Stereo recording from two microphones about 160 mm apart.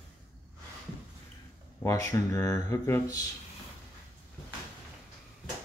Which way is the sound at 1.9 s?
20° left (ahead or behind).